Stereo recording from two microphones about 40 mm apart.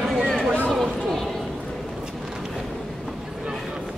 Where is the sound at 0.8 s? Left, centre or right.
Centre.